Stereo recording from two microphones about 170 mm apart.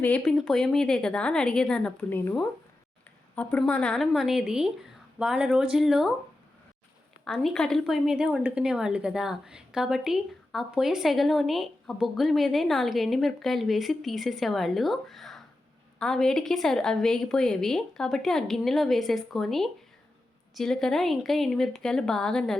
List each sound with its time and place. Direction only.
0.0 s a woman's voice: 5° left (ahead or behind)
7.3 s a woman's voice: centre (ahead or behind)